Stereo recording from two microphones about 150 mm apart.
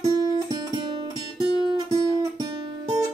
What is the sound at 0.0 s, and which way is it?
Music, 30° right (ahead or behind).